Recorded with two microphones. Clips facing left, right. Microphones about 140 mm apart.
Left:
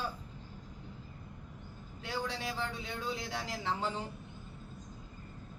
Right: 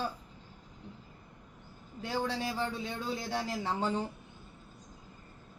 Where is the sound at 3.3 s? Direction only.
40° right (ahead or behind).